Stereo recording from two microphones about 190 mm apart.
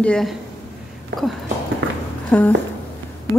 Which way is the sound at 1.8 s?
85° right.